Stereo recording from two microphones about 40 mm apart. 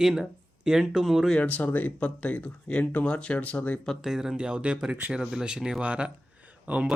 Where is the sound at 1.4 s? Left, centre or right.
Left.